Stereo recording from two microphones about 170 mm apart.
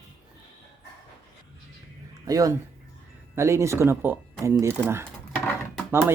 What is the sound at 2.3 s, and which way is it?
Speech, 20° right (ahead or behind).